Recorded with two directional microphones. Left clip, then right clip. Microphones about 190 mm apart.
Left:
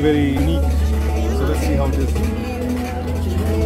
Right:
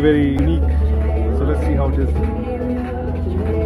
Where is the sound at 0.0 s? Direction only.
10° left (ahead or behind).